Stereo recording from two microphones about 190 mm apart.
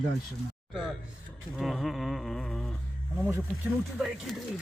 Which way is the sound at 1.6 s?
Centre (ahead or behind).